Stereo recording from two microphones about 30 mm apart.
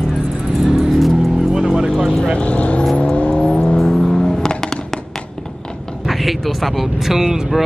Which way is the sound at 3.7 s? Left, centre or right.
Centre.